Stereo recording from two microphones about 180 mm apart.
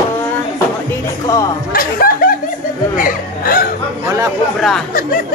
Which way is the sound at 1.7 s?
55° left (ahead or behind).